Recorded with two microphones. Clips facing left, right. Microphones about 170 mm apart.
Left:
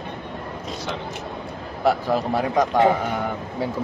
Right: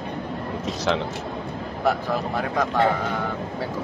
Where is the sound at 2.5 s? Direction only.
15° left (ahead or behind).